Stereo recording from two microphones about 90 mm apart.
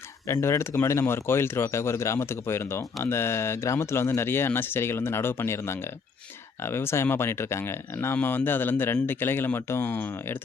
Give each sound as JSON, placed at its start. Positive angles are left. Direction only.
{"t": 0.4, "sound": "speech", "side_deg": 35}